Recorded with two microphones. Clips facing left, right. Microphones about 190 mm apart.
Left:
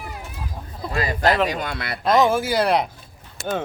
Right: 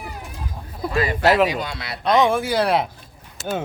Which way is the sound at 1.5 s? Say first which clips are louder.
Even; 55° left (ahead or behind).